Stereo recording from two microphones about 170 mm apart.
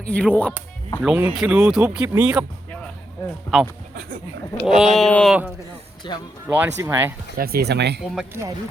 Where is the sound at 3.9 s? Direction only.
65° right (ahead or behind).